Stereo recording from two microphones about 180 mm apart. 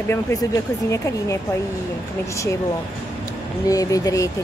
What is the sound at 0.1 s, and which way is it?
Speech, 20° left (ahead or behind).